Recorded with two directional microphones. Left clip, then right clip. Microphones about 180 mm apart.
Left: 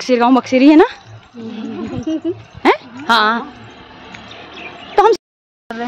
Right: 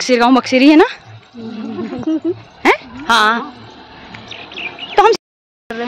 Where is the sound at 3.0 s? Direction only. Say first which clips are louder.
Right 1 dB; 10° left (ahead or behind).